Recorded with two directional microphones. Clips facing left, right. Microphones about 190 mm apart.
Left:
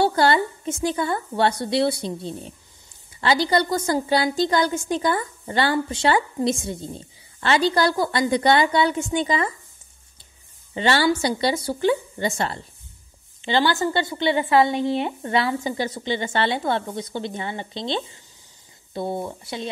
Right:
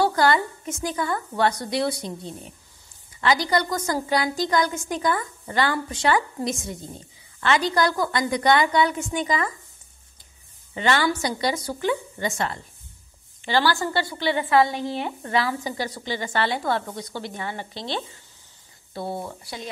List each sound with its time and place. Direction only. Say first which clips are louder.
0.0 s a woman's voice: left 1 dB; 30° left (ahead or behind)
10.7 s a woman's voice: left 3 dB; 30° left (ahead or behind)